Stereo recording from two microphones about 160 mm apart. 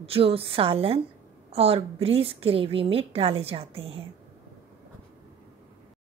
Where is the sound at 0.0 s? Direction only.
35° right (ahead or behind).